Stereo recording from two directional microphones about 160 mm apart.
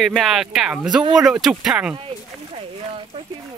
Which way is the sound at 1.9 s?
35° right (ahead or behind).